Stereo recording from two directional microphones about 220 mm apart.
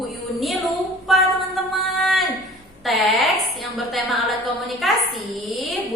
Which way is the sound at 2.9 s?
Centre (ahead or behind).